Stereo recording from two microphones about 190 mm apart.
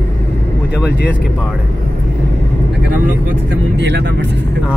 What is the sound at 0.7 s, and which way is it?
Speech, 5° right (ahead or behind).